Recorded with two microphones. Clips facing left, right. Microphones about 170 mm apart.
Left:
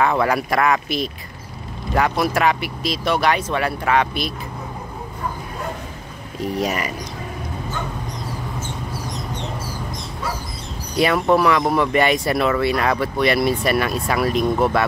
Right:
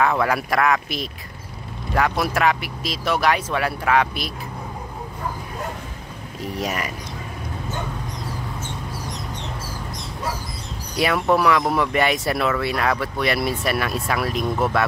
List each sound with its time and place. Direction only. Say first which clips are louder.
0.0 s speech: left 2 dB; centre (ahead or behind)
6.6 s speech: left 2 dB; centre (ahead or behind)
11.0 s speech: left 3 dB; centre (ahead or behind)